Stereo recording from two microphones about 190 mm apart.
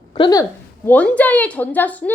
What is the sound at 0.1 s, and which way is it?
Speech, 20° left (ahead or behind).